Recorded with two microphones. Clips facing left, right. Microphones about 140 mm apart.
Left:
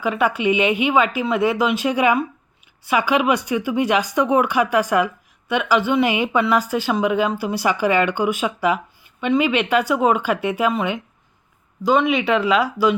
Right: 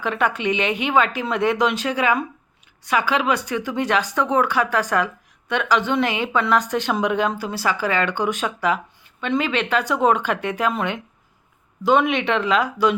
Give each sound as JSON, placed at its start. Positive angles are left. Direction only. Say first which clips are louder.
{"t": 0.0, "sound": "speech", "louder": "left 3 dB", "side_deg": 10}